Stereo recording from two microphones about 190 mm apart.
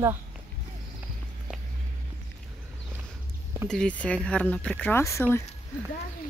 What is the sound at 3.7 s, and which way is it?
Speech, 5° left (ahead or behind).